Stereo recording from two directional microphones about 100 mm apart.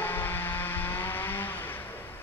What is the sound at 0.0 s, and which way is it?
Vehicle, 20° left (ahead or behind).